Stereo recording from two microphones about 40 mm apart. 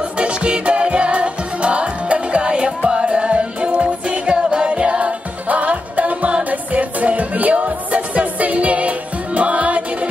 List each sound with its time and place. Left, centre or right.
0.2 s music: right